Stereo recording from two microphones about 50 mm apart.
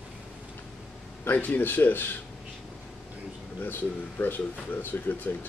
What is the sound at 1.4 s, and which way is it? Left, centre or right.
Speech, left.